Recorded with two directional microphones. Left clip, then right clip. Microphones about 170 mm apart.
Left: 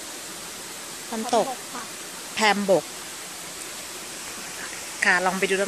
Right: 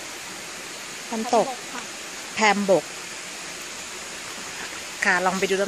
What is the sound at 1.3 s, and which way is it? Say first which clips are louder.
Speech: right 2 dB; 15° right (ahead or behind).